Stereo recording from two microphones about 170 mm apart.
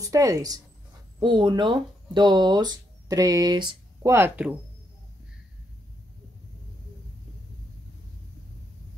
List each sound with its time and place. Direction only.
0.0 s speech: 20° right (ahead or behind)